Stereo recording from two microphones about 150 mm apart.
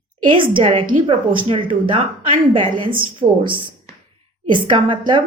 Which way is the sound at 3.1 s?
35° right (ahead or behind).